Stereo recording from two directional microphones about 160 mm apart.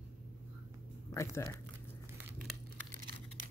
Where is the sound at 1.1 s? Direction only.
15° left (ahead or behind).